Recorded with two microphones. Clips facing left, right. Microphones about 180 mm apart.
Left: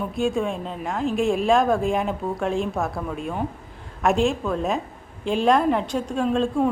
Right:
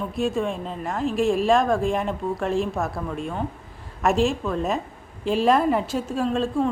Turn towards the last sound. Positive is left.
turn(degrees=0)  # may be behind; listen again after turning